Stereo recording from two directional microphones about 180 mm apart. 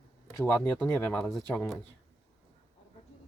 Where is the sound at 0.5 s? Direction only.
10° left (ahead or behind).